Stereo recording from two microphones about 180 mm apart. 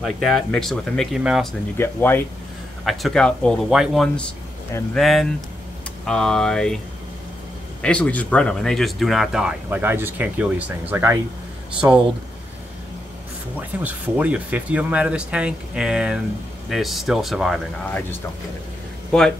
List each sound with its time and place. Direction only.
0.0 s speech: centre (ahead or behind)
1.8 s speech: 10° left (ahead or behind)
2.8 s speech: centre (ahead or behind)
7.8 s speech: 5° left (ahead or behind); by 12.0 s 15° right (ahead or behind)
13.6 s speech: 10° right (ahead or behind)
19.1 s speech: 5° left (ahead or behind)